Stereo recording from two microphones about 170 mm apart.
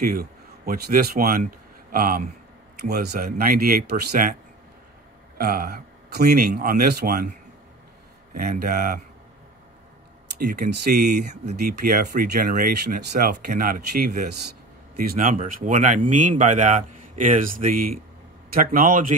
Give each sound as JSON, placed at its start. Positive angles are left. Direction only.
{"t": 0.0, "sound": "a man's voice", "side_deg": -60}
{"t": 2.8, "sound": "speech", "side_deg": -70}
{"t": 5.4, "sound": "speech", "side_deg": -60}
{"t": 8.4, "sound": "speech", "side_deg": -60}
{"t": 10.3, "sound": "speech", "side_deg": -70}